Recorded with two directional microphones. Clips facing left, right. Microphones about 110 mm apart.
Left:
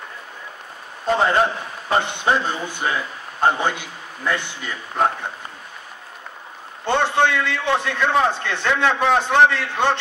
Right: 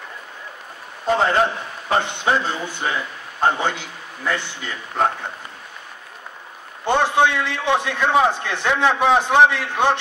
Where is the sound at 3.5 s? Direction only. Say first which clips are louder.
Left 1 dB; 10° left (ahead or behind).